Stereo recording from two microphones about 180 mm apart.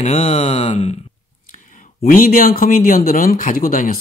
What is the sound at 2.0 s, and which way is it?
Speech, 50° left (ahead or behind).